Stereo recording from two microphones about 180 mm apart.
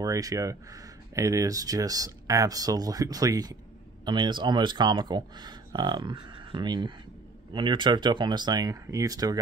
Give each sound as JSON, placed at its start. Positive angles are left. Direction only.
{"t": 0.0, "sound": "speech", "side_deg": -20}